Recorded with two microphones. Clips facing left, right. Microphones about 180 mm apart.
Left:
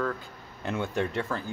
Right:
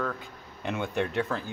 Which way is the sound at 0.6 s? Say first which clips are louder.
Even; 15° right (ahead or behind).